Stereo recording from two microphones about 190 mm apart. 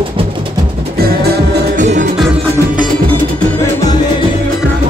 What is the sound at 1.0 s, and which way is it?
Music, 55° right (ahead or behind).